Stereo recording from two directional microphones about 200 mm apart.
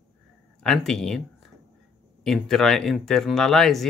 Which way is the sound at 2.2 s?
Centre (ahead or behind).